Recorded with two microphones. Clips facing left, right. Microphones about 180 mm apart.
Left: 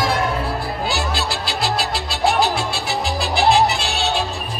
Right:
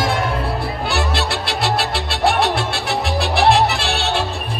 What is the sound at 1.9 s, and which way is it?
Salsa music, 60° right (ahead or behind).